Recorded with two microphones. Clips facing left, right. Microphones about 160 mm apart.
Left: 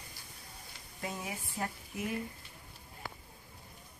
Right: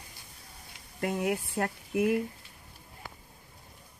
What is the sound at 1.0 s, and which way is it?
Speech, 65° right (ahead or behind).